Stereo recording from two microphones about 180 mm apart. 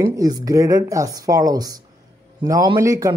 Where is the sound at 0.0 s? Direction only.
20° right (ahead or behind).